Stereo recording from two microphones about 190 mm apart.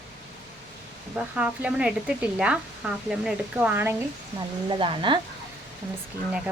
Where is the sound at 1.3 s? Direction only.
5° right (ahead or behind).